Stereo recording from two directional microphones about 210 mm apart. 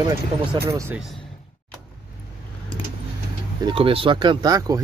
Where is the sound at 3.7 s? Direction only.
25° right (ahead or behind).